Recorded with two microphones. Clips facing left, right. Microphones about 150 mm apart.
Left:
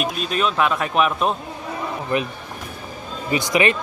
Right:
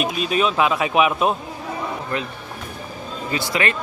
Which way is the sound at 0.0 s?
5° right (ahead or behind).